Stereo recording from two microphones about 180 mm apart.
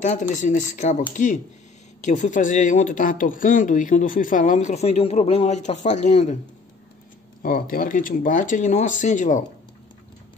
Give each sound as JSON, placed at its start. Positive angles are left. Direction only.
{"t": 0.0, "sound": "speech", "side_deg": 45}
{"t": 7.4, "sound": "speech", "side_deg": 50}